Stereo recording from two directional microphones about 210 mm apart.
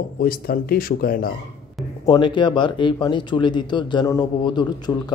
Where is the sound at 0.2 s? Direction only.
45° left (ahead or behind).